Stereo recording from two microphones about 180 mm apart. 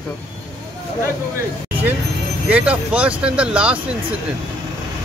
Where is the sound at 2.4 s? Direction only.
5° right (ahead or behind).